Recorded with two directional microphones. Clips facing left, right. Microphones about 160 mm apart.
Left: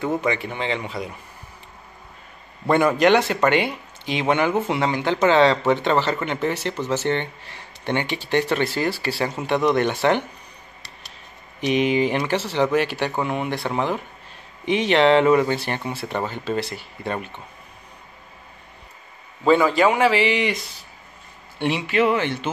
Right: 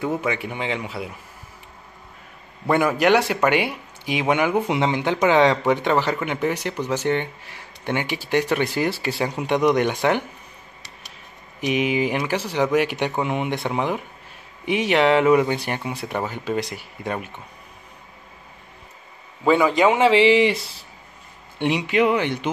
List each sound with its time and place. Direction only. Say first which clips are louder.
0.0 s speech: left 1 dB; 5° right (ahead or behind)
2.6 s speech: left 2 dB; 5° right (ahead or behind)
11.6 s speech: left 2 dB; 5° right (ahead or behind)
19.4 s a man's voice: even; 15° right (ahead or behind); by 20.7 s 30° right (ahead or behind)
21.5 s speech: right 1 dB; 20° right (ahead or behind)